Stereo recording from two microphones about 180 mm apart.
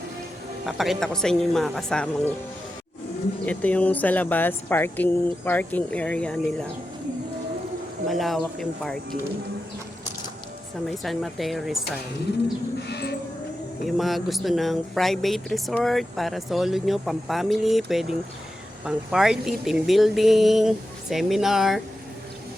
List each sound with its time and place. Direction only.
0.6 s speech: centre (ahead or behind)
3.4 s speech: 10° left (ahead or behind)
8.0 s speech: centre (ahead or behind)
10.8 s speech: centre (ahead or behind)
12.9 s a sound: 65° left (ahead or behind)
13.8 s speech: centre (ahead or behind)